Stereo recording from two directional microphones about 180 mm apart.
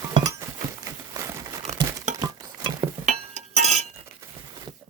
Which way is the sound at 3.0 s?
40° right (ahead or behind).